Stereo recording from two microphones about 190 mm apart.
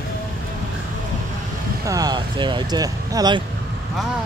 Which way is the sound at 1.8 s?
20° right (ahead or behind).